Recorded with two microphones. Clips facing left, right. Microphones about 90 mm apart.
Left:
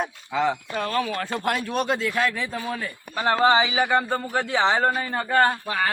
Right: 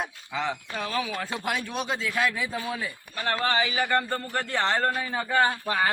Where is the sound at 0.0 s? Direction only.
5° left (ahead or behind).